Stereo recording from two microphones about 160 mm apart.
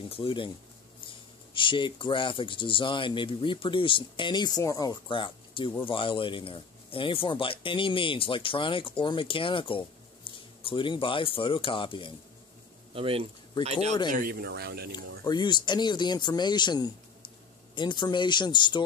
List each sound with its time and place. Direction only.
0.1 s speech: 35° left (ahead or behind)
12.9 s speech: 35° right (ahead or behind)
14.1 s speech: 70° right (ahead or behind); by 15.1 s 85° right
15.2 s speech: 25° left (ahead or behind)